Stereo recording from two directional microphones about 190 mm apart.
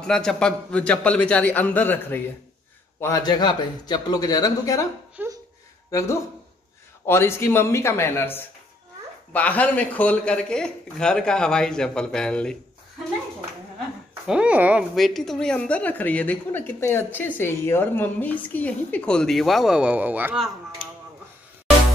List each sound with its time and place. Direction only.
0.0 s a man's voice: 5° left (ahead or behind)
5.1 s a sound: 10° right (ahead or behind)
5.9 s a man's voice: 15° left (ahead or behind)
14.2 s a woman's voice: 5° right (ahead or behind)